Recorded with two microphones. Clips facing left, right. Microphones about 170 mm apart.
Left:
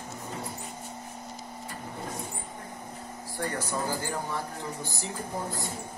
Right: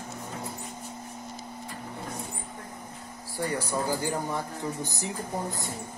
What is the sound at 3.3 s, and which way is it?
Speech, 10° right (ahead or behind).